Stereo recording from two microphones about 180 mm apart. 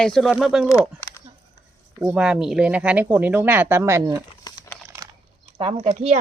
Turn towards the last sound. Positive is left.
turn(degrees=-40)  # may be behind; listen again after turning